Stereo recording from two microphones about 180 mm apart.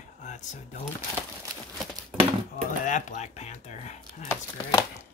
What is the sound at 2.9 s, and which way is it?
Speech, 45° left (ahead or behind).